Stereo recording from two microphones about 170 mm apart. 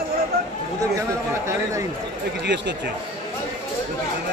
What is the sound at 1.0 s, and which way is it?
Speech, 20° right (ahead or behind).